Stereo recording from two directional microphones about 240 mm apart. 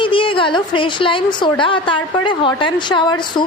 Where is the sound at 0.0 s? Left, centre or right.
Left.